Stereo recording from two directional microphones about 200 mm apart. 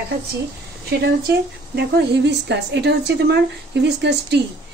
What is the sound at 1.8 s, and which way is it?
A woman's voice, 55° right (ahead or behind).